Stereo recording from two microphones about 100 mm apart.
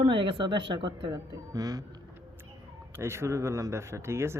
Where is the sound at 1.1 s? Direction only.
40° right (ahead or behind).